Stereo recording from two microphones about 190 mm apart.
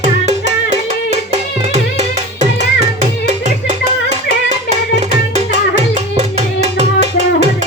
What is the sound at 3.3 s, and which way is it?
Music, 40° right (ahead or behind).